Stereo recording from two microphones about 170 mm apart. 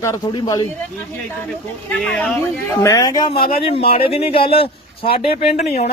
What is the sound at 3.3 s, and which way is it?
Speech, 60° left (ahead or behind).